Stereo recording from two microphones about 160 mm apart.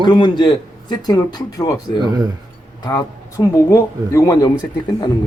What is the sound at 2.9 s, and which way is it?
Speech, 20° left (ahead or behind).